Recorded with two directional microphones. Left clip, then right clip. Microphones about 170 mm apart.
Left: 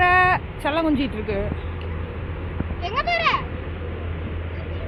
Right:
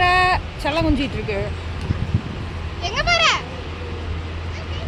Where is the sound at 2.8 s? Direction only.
45° right (ahead or behind).